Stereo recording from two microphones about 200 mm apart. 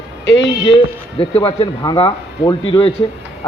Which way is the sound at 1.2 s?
30° left (ahead or behind).